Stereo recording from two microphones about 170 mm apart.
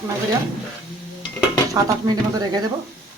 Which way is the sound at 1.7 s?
20° right (ahead or behind).